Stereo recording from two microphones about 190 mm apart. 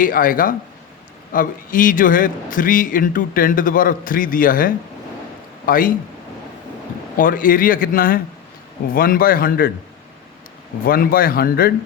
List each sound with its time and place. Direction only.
0.0 s a man's voice: 45° left (ahead or behind)
7.2 s a man's voice: 45° left (ahead or behind)
10.8 s a man's voice: 50° left (ahead or behind)